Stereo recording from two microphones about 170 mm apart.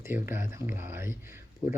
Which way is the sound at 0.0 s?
15° right (ahead or behind).